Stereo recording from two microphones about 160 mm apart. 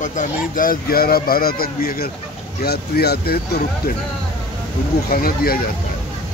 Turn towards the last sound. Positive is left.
turn(degrees=70)  # may be behind; listen again after turning